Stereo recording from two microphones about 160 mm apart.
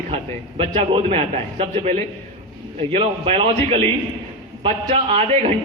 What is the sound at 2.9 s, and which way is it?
A man's voice, 35° right (ahead or behind).